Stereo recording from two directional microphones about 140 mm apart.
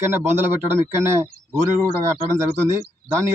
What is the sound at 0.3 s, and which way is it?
Speech, 15° right (ahead or behind).